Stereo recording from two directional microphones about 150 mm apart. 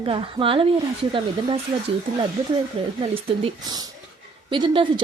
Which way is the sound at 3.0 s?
35° right (ahead or behind).